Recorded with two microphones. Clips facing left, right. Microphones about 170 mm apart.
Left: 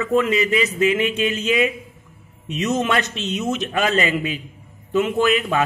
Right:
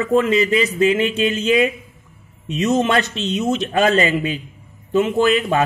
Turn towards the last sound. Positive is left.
turn(degrees=-35)  # may be behind; listen again after turning